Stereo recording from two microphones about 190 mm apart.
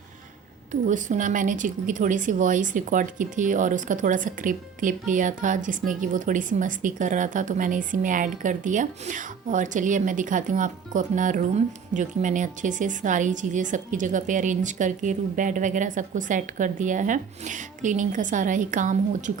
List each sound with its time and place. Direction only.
0.7 s speech: 40° right (ahead or behind)